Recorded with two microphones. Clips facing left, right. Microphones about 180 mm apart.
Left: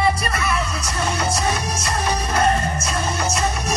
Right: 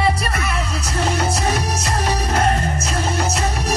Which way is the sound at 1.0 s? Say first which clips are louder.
Right 2 dB; 60° right (ahead or behind).